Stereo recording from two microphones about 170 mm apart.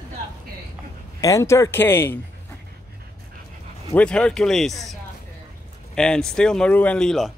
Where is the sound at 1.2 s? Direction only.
20° left (ahead or behind).